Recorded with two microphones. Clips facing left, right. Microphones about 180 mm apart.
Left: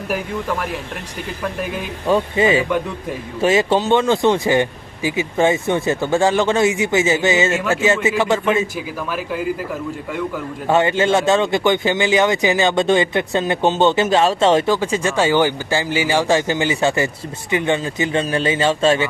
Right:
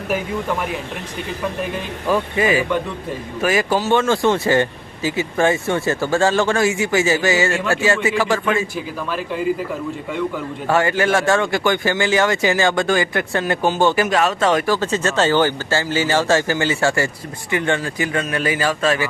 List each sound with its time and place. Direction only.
0.1 s speech: centre (ahead or behind)
2.0 s speech: 30° left (ahead or behind)
9.1 s speech: 5° left (ahead or behind)
10.7 s speech: 20° left (ahead or behind)
14.8 s speech: 10° left (ahead or behind)